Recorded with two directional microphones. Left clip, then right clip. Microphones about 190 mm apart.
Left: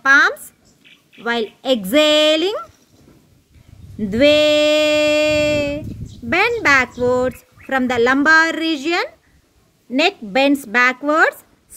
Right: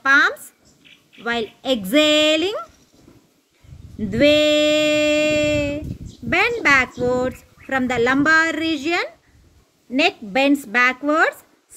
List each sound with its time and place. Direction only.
0.0 s child singing: 20° left (ahead or behind)
4.0 s child singing: 25° left (ahead or behind)